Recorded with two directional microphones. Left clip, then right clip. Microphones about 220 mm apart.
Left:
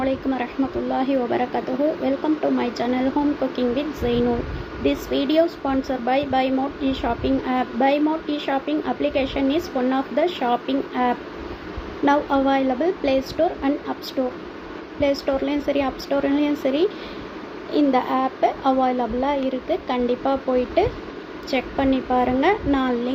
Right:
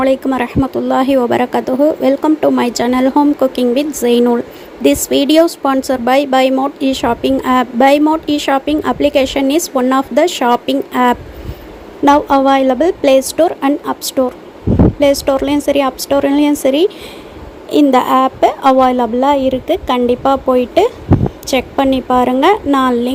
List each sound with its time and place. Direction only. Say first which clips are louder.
0.0 s a woman's voice: right 10 dB; 50° right (ahead or behind)